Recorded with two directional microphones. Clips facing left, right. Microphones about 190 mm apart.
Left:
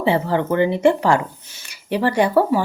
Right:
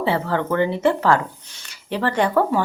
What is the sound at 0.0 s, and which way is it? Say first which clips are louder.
Speech: left 3 dB; 15° left (ahead or behind).